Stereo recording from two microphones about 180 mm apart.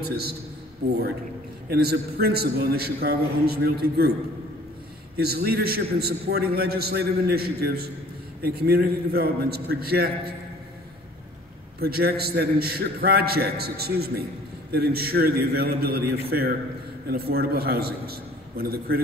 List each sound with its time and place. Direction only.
0.1 s a man's voice: 60° right (ahead or behind)
1.7 s a man's voice: 60° right (ahead or behind)
5.1 s a man's voice: 60° right (ahead or behind)
11.8 s a man's voice: 60° right (ahead or behind)